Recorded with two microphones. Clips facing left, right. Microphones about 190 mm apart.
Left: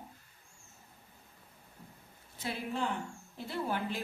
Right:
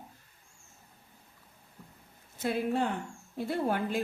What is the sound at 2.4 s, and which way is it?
A woman's voice, 50° right (ahead or behind).